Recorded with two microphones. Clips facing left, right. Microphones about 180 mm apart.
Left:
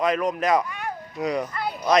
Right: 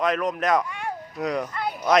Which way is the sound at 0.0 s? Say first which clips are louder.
Left 1 dB; centre (ahead or behind).